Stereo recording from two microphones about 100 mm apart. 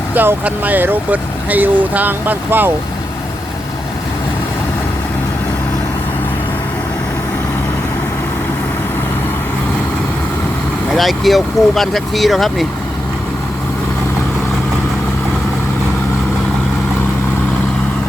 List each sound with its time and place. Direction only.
0.1 s speech: 20° right (ahead or behind)
10.9 s speech: centre (ahead or behind)